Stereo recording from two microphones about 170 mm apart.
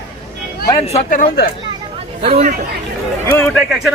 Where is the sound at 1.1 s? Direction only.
55° left (ahead or behind).